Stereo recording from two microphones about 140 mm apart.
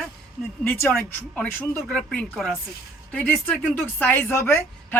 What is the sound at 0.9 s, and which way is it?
Speech, 5° left (ahead or behind).